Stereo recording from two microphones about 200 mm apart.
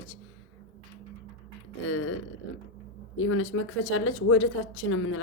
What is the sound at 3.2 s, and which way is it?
A woman's voice, 90° left.